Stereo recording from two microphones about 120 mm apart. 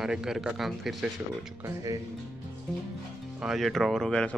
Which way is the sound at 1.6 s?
25° right (ahead or behind).